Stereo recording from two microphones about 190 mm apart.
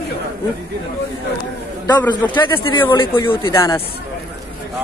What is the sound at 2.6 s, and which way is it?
Speech, 25° left (ahead or behind).